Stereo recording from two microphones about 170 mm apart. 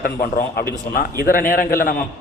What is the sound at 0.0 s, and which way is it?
A man's voice, 60° left (ahead or behind).